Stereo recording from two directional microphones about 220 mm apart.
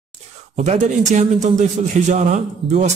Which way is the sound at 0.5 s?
35° right (ahead or behind).